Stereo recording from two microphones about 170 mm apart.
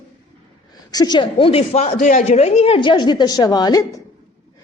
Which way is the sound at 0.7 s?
25° left (ahead or behind).